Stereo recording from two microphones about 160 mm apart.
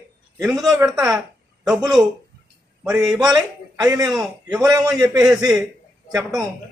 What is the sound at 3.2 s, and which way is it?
Speech, 25° right (ahead or behind).